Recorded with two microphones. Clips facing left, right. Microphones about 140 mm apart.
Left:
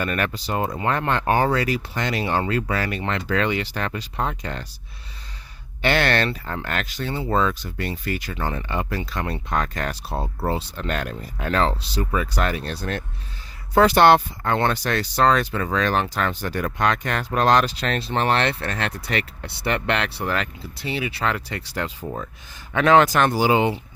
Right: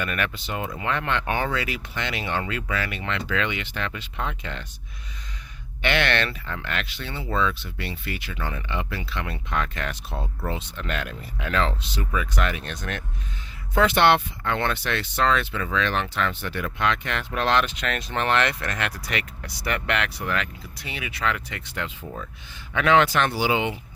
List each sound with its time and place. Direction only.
0.0 s speech: 35° left (ahead or behind)
5.8 s speech: 40° left (ahead or behind)